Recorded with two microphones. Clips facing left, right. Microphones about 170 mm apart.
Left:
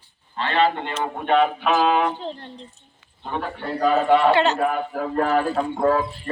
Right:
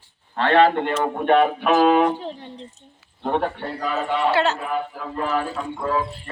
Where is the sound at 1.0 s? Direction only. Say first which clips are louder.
Right 1 dB; 50° right (ahead or behind).